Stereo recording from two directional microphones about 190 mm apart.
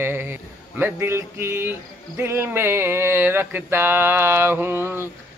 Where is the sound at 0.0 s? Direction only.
10° right (ahead or behind).